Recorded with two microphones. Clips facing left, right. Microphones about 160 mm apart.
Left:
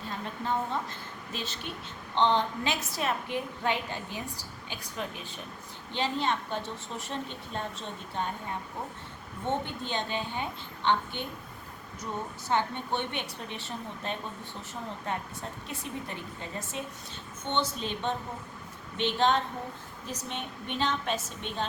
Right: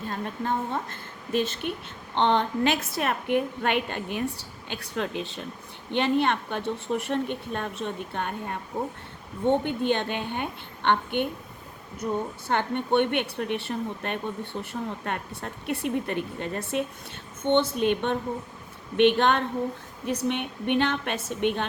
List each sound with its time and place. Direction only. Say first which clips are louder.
0.1 s a woman's voice: right 3 dB; 55° right (ahead or behind); by 5.4 s 75° right (ahead or behind)
5.9 s a woman's voice: right 6 dB; 60° right (ahead or behind)
12.5 s a woman's voice: right 4 dB; 60° right (ahead or behind)